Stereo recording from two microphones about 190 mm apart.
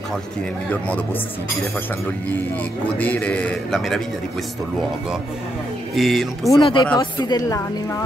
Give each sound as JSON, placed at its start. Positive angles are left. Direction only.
{"t": 0.7, "sound": "a man's voice", "side_deg": 10}
{"t": 3.0, "sound": "a man's voice", "side_deg": 10}
{"t": 5.9, "sound": "speech", "side_deg": 0}
{"t": 6.6, "sound": "a woman's voice", "side_deg": 25}